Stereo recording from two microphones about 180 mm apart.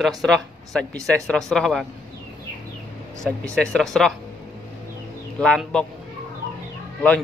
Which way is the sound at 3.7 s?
Centre (ahead or behind).